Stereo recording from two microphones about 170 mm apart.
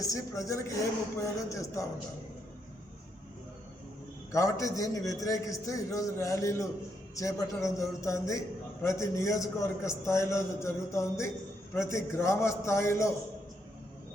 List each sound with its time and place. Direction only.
0.0 s a man's voice: 20° left (ahead or behind)
4.3 s a man's voice: 20° left (ahead or behind)